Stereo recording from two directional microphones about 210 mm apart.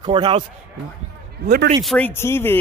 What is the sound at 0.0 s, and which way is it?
Speech, 20° right (ahead or behind).